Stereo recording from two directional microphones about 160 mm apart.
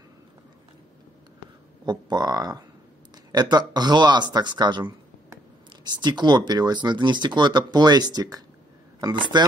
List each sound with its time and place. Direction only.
1.9 s speech: 25° right (ahead or behind)